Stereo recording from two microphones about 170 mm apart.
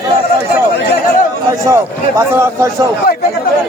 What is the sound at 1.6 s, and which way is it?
Speech, 20° right (ahead or behind).